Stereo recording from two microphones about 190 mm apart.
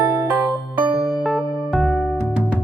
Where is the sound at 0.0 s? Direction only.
10° right (ahead or behind).